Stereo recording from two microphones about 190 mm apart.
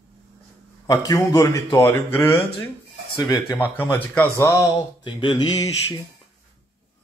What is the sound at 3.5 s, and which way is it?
A man's voice, 10° left (ahead or behind).